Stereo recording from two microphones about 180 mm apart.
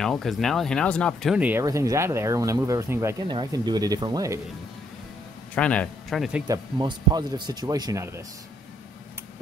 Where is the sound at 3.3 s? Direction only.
25° right (ahead or behind).